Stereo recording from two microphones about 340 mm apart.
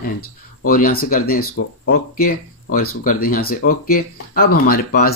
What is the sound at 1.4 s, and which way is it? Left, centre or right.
Speech, left.